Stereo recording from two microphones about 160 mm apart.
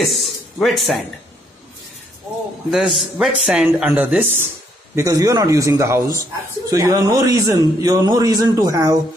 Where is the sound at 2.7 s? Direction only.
Centre (ahead or behind).